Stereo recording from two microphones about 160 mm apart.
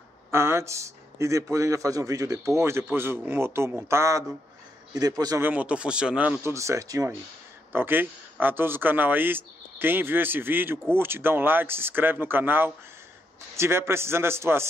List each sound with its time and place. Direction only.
0.3 s a man's voice: 15° right (ahead or behind)
5.4 s speech: 10° right (ahead or behind)